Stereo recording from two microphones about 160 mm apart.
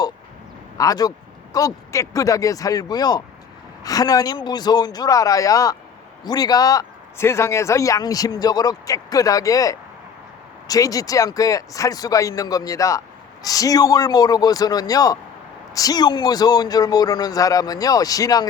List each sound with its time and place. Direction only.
0.8 s speech: 25° left (ahead or behind)